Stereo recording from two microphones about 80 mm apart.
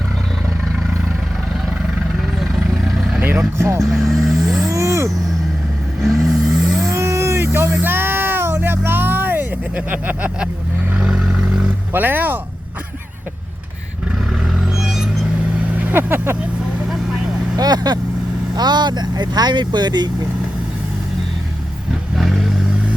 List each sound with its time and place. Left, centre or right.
2.4 s vehicle: centre
4.7 s vehicle: right
6.0 s vehicle: centre
6.9 s vehicle: right; by 11.3 s centre
11.9 s speech: right
14.4 s vehicle: centre
15.8 s speech: right
17.6 s vehicle: right
18.5 s speech: right
22.2 s vehicle: centre